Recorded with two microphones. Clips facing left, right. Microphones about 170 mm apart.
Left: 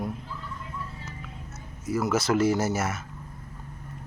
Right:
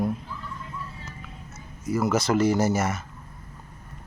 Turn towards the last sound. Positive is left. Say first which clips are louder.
# right 3 dB
turn(degrees=5)  # may be behind; listen again after turning